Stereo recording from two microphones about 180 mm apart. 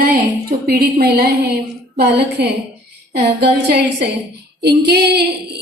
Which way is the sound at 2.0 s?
65° right (ahead or behind).